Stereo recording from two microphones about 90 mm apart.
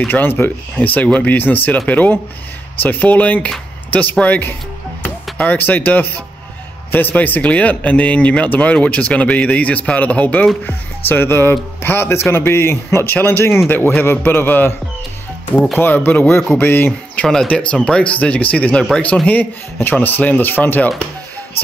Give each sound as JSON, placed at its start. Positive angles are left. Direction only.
{"t": 0.0, "sound": "a man's voice", "side_deg": 20}
{"t": 15.8, "sound": "a man's voice", "side_deg": 20}